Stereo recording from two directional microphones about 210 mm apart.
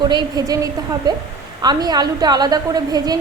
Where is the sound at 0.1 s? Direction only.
20° right (ahead or behind).